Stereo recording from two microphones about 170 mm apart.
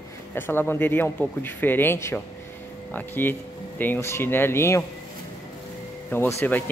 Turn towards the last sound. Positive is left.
turn(degrees=10)  # may be behind; listen again after turning